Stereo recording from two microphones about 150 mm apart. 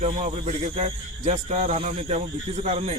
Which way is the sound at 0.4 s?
45° right (ahead or behind).